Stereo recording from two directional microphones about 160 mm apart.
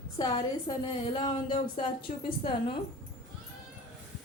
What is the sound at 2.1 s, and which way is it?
Speech, 50° left (ahead or behind).